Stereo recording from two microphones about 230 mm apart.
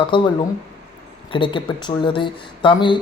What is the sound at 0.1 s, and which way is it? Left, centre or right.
Speech, left.